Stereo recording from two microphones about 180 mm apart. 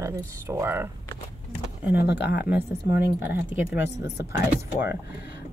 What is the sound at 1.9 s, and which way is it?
Speech, 70° left (ahead or behind).